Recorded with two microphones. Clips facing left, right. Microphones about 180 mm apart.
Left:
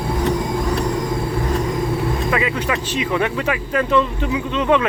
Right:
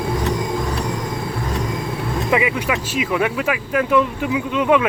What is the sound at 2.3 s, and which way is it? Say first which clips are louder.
Speech: right 1 dB; 10° right (ahead or behind).